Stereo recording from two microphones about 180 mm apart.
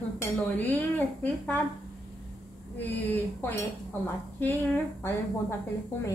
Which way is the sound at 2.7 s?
10° left (ahead or behind).